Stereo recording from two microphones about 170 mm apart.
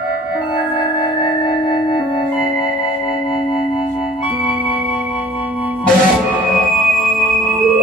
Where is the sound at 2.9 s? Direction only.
30° left (ahead or behind).